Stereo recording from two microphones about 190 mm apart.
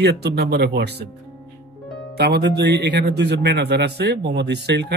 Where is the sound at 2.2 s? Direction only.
60° right (ahead or behind).